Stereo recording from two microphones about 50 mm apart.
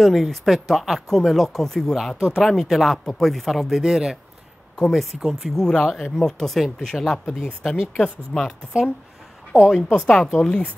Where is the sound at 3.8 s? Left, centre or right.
Centre.